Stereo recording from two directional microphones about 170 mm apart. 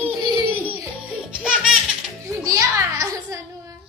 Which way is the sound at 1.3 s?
5° right (ahead or behind).